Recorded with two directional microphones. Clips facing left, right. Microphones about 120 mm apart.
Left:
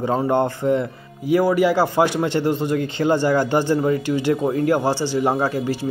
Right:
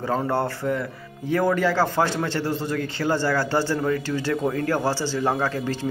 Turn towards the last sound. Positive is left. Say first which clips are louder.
# left 4 dB
turn(degrees=15)  # may be behind; listen again after turning